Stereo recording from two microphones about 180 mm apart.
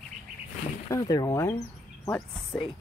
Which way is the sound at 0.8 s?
20° left (ahead or behind).